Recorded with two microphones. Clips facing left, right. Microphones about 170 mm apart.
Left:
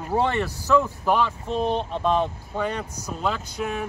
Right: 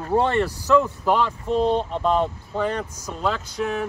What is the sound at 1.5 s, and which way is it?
Speech, 15° right (ahead or behind).